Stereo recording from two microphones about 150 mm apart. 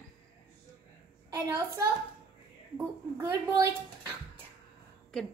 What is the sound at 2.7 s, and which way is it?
Speech, 20° right (ahead or behind).